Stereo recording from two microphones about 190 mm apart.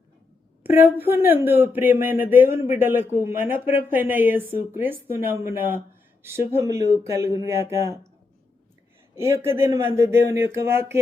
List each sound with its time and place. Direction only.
0.6 s speech: 10° right (ahead or behind)
9.1 s speech: 15° right (ahead or behind)